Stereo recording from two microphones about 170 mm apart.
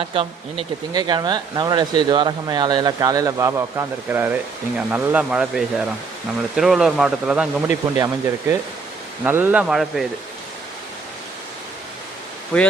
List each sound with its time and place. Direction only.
0.0 s a man's voice: 30° right (ahead or behind); by 7.8 s 5° right (ahead or behind)
7.9 s speech: 20° right (ahead or behind); by 10.1 s centre (ahead or behind)
12.5 s a man's voice: 5° left (ahead or behind)